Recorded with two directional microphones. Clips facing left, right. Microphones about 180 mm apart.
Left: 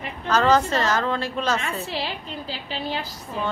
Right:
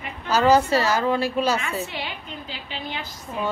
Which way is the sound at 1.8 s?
35° left (ahead or behind).